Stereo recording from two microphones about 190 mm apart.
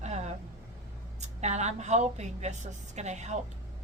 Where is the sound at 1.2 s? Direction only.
35° right (ahead or behind).